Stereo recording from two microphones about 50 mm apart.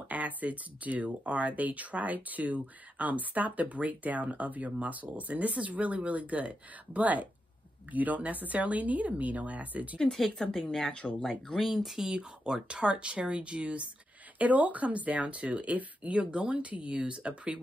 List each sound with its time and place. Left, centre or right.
0.1 s speech: right
10.9 s speech: centre
11.6 s speech: centre; by 17.6 s right